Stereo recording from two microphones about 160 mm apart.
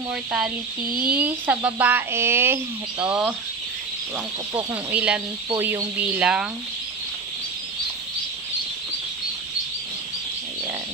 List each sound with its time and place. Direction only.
0.1 s a sound: 5° right (ahead or behind)
0.8 s speech: 65° right (ahead or behind)
1.1 s speech: 10° right (ahead or behind)
4.6 s speech: 10° right (ahead or behind)